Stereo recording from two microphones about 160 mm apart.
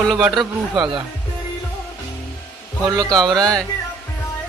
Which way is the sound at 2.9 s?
25° right (ahead or behind).